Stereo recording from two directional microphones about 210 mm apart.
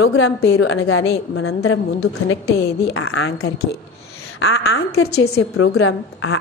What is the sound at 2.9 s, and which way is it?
Speech, 75° left (ahead or behind).